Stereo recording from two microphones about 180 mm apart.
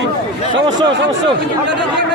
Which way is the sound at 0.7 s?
25° right (ahead or behind).